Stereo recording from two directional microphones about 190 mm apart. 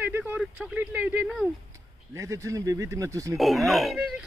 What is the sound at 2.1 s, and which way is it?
Speech, 15° right (ahead or behind).